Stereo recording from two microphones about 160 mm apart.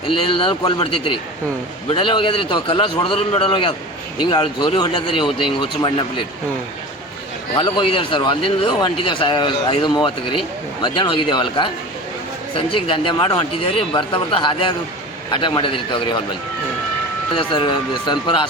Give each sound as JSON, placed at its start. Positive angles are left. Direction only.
{"t": 0.2, "sound": "speech", "side_deg": 30}
{"t": 7.5, "sound": "speech", "side_deg": 30}
{"t": 17.3, "sound": "speech", "side_deg": 30}